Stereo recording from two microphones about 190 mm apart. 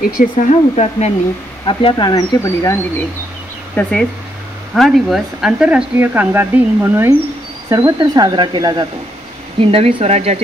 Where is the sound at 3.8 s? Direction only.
10° left (ahead or behind).